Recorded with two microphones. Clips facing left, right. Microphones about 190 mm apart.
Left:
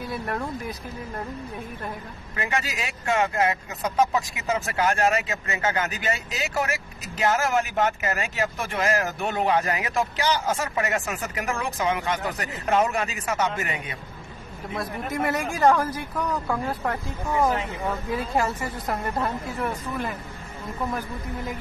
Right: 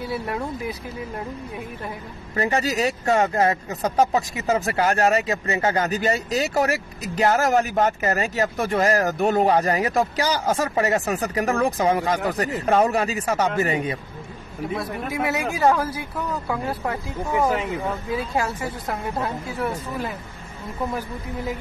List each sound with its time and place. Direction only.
0.1 s speech: 5° right (ahead or behind)
2.3 s speech: 35° right (ahead or behind)
14.8 s speech: 5° right (ahead or behind)